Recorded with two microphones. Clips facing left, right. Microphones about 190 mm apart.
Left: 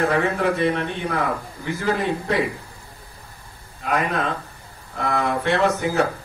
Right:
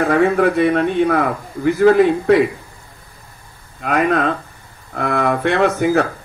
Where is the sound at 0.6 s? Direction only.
60° right (ahead or behind).